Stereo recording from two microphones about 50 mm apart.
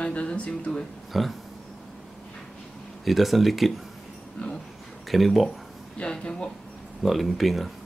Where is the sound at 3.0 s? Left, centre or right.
Centre.